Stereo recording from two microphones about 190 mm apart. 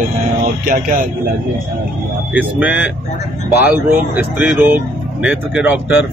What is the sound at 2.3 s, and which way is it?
Speech, 5° right (ahead or behind).